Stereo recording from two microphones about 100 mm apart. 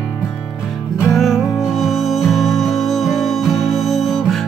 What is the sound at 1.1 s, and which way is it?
Music, centre (ahead or behind).